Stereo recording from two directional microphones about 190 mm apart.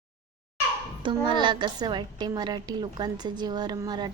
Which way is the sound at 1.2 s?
25° right (ahead or behind).